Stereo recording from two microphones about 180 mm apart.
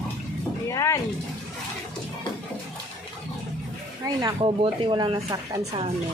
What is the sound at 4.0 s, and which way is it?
Speech, 20° right (ahead or behind).